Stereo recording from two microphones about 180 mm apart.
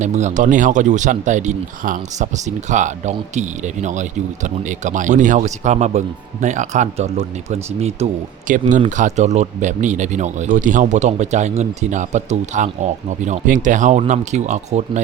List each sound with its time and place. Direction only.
0.0 s speech: 40° right (ahead or behind)